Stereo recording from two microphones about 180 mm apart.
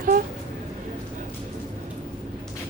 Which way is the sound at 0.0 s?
50° right (ahead or behind).